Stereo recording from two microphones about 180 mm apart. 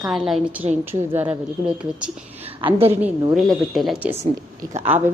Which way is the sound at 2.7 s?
35° right (ahead or behind).